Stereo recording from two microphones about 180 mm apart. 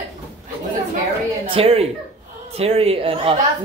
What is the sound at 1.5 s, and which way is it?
Speech, 35° right (ahead or behind).